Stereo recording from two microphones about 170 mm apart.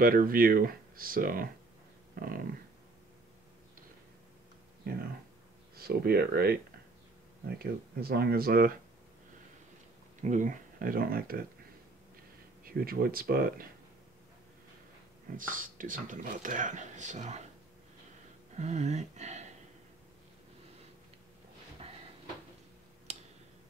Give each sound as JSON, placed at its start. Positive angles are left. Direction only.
{"t": 0.0, "sound": "speech", "side_deg": -55}
{"t": 5.8, "sound": "speech", "side_deg": -65}
{"t": 10.2, "sound": "speech", "side_deg": -50}
{"t": 12.6, "sound": "speech", "side_deg": -60}
{"t": 15.3, "sound": "speech", "side_deg": -50}
{"t": 18.6, "sound": "speech", "side_deg": -40}